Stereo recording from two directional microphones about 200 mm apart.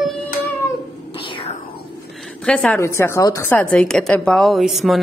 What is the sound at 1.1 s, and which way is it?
Whispering, 25° left (ahead or behind).